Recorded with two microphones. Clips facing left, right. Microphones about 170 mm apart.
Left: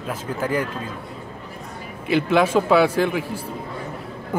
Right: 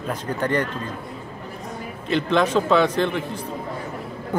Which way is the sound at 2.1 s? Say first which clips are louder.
Left 2 dB; 10° left (ahead or behind).